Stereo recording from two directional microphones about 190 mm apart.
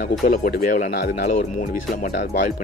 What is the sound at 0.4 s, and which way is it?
Speech, 45° left (ahead or behind).